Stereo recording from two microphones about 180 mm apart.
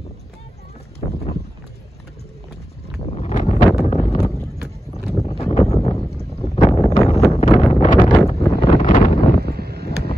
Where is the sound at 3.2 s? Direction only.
40° left (ahead or behind).